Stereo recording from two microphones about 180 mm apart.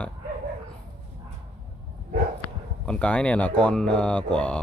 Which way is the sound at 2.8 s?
5° left (ahead or behind).